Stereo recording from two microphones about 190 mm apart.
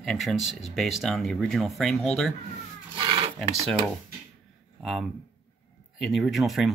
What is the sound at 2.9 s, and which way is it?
Filing, 30° right (ahead or behind).